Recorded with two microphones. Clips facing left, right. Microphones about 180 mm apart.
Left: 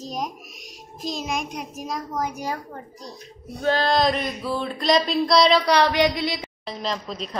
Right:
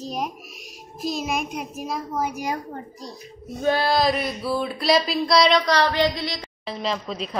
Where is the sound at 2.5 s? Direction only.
30° right (ahead or behind).